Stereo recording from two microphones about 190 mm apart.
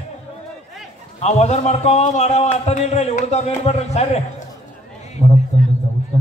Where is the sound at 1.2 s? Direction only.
35° left (ahead or behind).